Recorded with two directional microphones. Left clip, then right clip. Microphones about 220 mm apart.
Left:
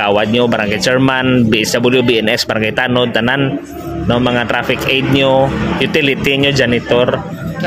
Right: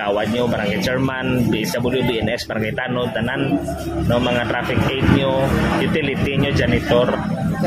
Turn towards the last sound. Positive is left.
turn(degrees=40)  # may be behind; listen again after turning